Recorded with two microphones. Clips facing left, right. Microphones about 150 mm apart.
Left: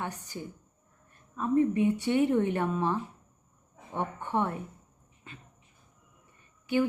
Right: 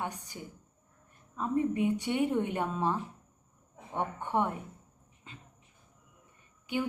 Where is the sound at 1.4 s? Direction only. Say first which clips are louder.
Left 4 dB; 15° right (ahead or behind).